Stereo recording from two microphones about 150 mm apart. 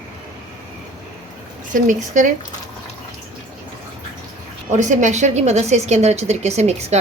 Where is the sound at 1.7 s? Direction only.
60° right (ahead or behind).